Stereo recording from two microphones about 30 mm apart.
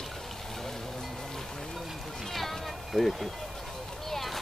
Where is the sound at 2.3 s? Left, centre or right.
Centre.